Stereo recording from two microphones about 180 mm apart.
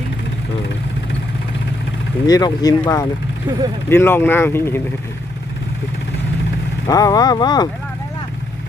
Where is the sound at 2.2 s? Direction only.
20° left (ahead or behind).